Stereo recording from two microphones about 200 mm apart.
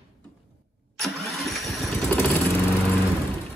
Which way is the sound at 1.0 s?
Centre (ahead or behind).